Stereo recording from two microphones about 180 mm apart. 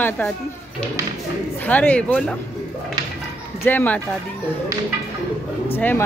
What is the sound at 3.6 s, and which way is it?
Speech, 10° left (ahead or behind).